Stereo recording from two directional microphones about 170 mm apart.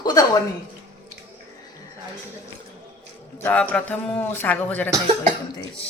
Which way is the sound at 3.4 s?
10° left (ahead or behind).